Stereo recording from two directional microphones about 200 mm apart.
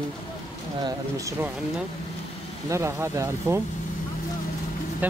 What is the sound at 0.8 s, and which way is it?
Speech, 15° right (ahead or behind).